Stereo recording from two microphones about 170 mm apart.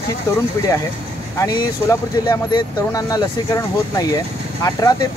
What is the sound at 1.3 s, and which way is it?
Speech, 20° left (ahead or behind).